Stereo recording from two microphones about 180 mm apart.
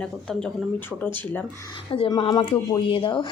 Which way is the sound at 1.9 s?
30° left (ahead or behind).